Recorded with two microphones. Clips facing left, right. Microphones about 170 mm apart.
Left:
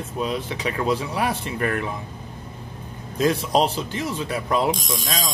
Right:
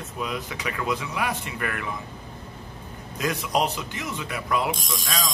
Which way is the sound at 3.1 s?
30° left (ahead or behind).